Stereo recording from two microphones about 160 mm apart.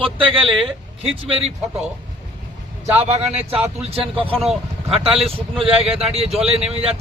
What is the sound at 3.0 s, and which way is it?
A man's voice, 40° right (ahead or behind).